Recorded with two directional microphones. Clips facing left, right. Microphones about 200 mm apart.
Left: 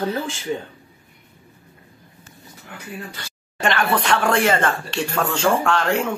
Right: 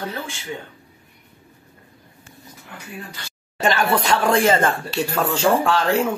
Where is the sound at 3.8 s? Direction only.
10° right (ahead or behind).